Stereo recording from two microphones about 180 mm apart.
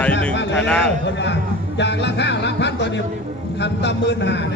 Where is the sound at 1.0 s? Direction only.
80° left.